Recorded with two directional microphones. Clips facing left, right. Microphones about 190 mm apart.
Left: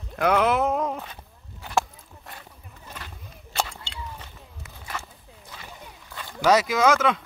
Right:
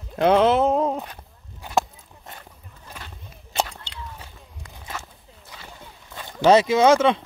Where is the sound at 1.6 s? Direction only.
15° right (ahead or behind).